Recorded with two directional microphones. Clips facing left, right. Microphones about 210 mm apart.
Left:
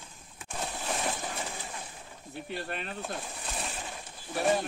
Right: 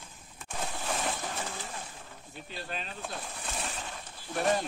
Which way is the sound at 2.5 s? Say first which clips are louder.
Left 3 dB; 60° left (ahead or behind).